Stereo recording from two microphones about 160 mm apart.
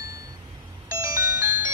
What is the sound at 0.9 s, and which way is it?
Music, 15° right (ahead or behind).